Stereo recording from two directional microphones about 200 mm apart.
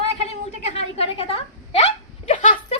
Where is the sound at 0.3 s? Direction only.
30° left (ahead or behind).